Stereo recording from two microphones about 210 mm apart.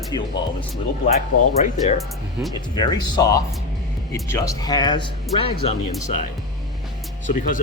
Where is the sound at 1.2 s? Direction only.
35° left (ahead or behind).